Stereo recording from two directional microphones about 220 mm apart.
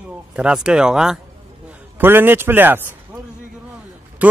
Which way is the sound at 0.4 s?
5° right (ahead or behind).